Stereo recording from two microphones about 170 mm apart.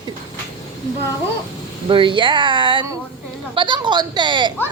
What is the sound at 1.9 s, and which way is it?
A woman's voice, 30° right (ahead or behind).